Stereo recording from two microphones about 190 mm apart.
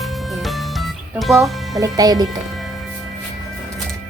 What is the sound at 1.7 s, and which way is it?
Speech, 20° right (ahead or behind).